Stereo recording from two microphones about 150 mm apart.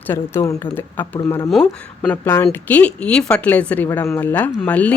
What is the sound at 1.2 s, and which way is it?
Speech, 25° left (ahead or behind).